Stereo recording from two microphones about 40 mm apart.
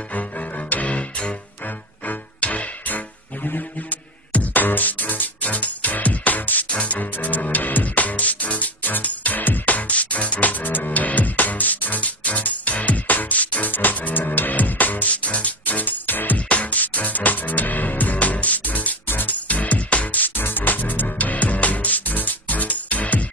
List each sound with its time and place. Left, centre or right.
0.7 s music: left
2.0 s music: left
4.3 s music: left
6.7 s music: left
10.6 s music: left
16.4 s music: left
19.4 s music: left
20.3 s music: left